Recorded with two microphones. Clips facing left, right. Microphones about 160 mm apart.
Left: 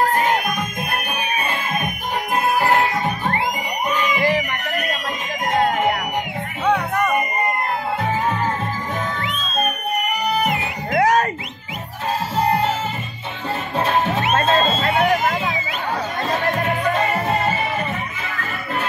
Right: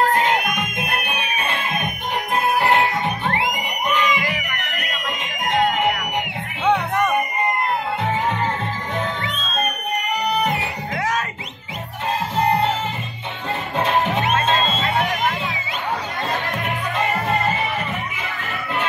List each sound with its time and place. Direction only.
3.9 s crowd: 35° left (ahead or behind)
6.6 s music: centre (ahead or behind)
10.5 s music: 30° right (ahead or behind)
11.0 s a sound: 40° left (ahead or behind)
13.7 s music: centre (ahead or behind)
14.3 s music: 40° left (ahead or behind)